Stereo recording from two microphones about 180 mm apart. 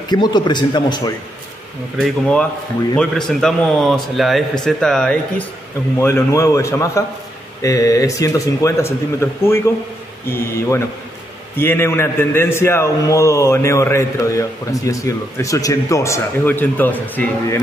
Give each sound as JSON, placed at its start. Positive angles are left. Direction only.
{"t": 0.1, "sound": "speech", "side_deg": 25}
{"t": 2.0, "sound": "speech", "side_deg": 5}
{"t": 5.9, "sound": "a man's voice", "side_deg": 15}